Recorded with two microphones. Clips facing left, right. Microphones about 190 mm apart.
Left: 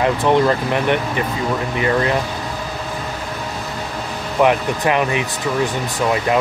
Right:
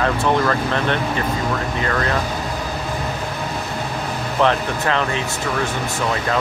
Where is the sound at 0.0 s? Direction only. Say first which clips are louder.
Left 3 dB; 20° left (ahead or behind).